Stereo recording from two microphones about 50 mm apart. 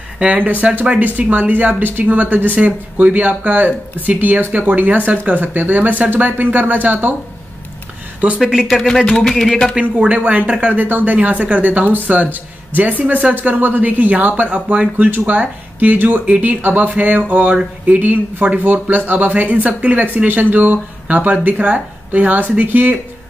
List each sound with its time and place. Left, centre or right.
0.3 s speech: right
8.2 s speech: right
9.1 s speech: centre
9.8 s speech: right
11.1 s speech: right